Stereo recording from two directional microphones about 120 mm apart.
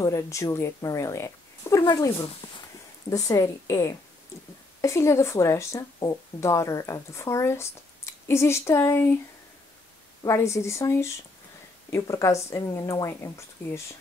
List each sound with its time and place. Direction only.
0.0 s speech: 25° left (ahead or behind)
2.4 s a sound: 40° left (ahead or behind)
3.1 s speech: 30° left (ahead or behind)
10.2 s speech: 25° left (ahead or behind)